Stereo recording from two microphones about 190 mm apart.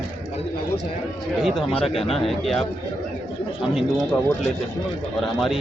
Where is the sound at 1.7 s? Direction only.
30° left (ahead or behind).